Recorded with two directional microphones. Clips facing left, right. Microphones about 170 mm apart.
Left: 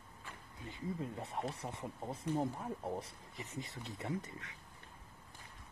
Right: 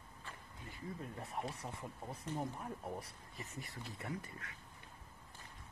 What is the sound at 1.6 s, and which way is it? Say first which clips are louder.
Speech: left 3 dB; 25° left (ahead or behind).